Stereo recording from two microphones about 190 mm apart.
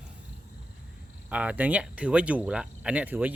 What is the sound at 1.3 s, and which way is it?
Speech, 5° right (ahead or behind).